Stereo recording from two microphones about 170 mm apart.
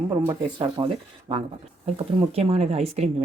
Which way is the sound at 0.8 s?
25° right (ahead or behind).